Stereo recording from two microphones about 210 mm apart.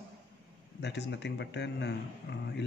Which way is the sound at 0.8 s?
55° left (ahead or behind).